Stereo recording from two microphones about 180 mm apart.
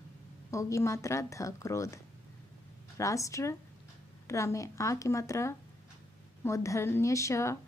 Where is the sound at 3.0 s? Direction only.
15° left (ahead or behind).